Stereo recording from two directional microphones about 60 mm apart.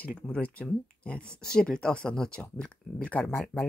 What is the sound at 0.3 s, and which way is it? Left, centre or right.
Speech, left.